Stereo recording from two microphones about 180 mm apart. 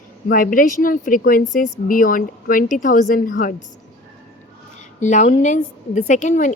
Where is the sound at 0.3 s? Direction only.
50° left (ahead or behind).